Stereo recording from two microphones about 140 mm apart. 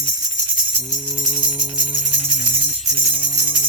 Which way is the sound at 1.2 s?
35° right (ahead or behind).